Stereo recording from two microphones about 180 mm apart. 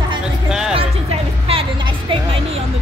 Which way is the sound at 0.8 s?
30° right (ahead or behind).